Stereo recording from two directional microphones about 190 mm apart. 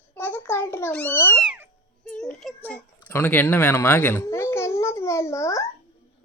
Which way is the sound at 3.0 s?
10° left (ahead or behind).